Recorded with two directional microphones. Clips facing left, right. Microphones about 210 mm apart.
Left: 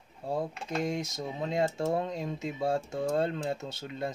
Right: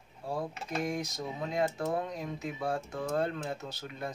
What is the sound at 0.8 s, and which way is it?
Speech, 25° left (ahead or behind).